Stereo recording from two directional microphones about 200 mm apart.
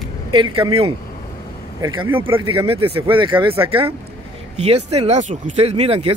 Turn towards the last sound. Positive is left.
turn(degrees=-30)  # may be behind; listen again after turning